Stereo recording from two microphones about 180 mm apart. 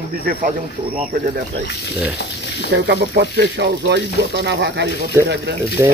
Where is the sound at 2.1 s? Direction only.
70° left (ahead or behind).